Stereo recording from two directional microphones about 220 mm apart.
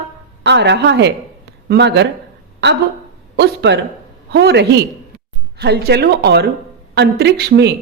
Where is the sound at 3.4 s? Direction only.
50° right (ahead or behind).